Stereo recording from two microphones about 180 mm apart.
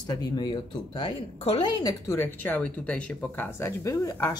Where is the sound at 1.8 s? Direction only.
15° left (ahead or behind).